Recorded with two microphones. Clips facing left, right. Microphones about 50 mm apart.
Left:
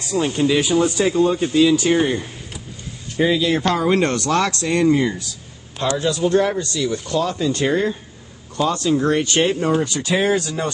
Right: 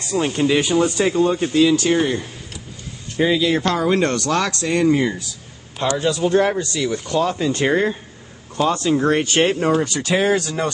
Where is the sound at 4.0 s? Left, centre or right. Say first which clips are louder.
Even; left.